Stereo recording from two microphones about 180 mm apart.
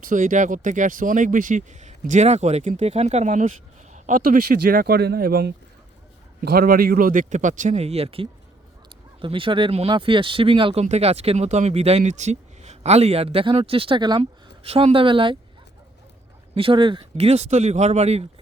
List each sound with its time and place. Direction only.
0.1 s speech: 45° right (ahead or behind)
3.9 s a sound: 40° right (ahead or behind)
4.2 s speech: 60° right (ahead or behind); by 15.4 s 30° right (ahead or behind)
16.6 s speech: 30° right (ahead or behind)